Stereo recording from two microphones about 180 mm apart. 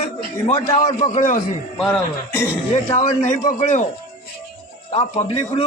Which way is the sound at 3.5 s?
40° left (ahead or behind).